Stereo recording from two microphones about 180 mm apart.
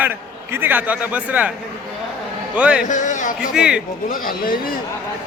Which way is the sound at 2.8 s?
45° left (ahead or behind).